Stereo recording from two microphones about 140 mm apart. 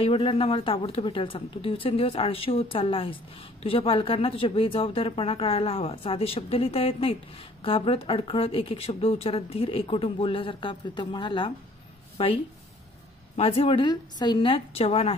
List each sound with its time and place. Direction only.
0.0 s speech: 40° left (ahead or behind)
13.4 s a woman's voice: 45° left (ahead or behind)